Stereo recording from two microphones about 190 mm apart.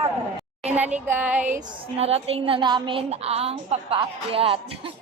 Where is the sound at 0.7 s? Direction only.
10° right (ahead or behind).